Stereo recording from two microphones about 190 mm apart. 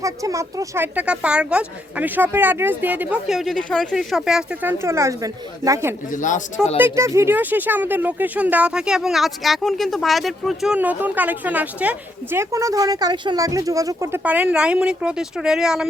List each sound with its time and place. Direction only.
0.0 s speech: 15° right (ahead or behind)
4.8 s speech: 15° right (ahead or behind)
6.1 s speech: 40° left (ahead or behind)
6.7 s speech: 15° right (ahead or behind)